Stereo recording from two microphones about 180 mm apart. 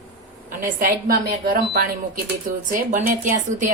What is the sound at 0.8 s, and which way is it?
A woman's voice, 55° right (ahead or behind).